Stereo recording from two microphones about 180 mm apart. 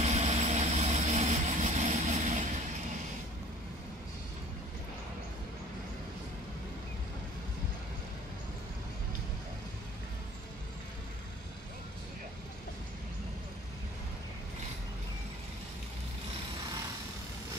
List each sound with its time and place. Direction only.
0.0 s vehicle: 35° right (ahead or behind)